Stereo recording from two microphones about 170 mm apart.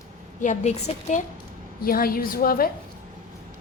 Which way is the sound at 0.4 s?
45° left (ahead or behind).